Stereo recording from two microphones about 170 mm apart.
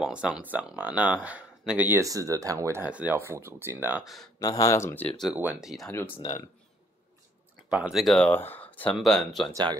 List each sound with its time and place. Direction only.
0.0 s speech: 5° right (ahead or behind)
4.0 s speech: centre (ahead or behind)
4.4 s speech: 20° left (ahead or behind); by 5.9 s centre (ahead or behind)
5.9 s speech: 10° left (ahead or behind)
6.1 s speech: 40° left (ahead or behind)
7.7 s speech: 5° right (ahead or behind)
9.5 s speech: 25° right (ahead or behind)